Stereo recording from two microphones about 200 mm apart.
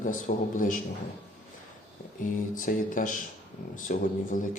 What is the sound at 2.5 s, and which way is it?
A man's voice, 40° left (ahead or behind).